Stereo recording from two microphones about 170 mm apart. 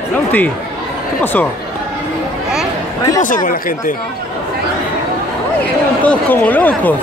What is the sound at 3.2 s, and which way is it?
Speech, 55° left (ahead or behind).